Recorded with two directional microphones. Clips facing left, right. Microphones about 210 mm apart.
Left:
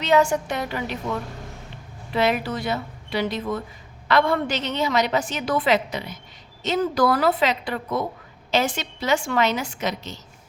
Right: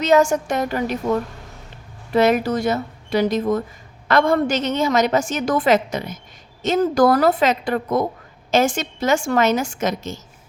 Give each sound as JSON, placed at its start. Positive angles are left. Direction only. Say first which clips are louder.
{"t": 0.0, "sound": "a woman's voice", "louder": "right 4 dB", "side_deg": -45}